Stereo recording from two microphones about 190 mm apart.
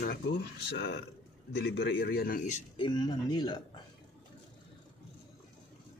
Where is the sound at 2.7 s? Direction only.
25° left (ahead or behind).